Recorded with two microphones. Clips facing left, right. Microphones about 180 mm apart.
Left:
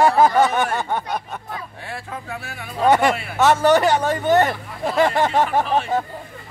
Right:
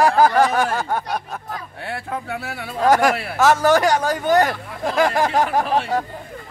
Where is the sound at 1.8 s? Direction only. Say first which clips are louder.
Right 7 dB; 65° right (ahead or behind).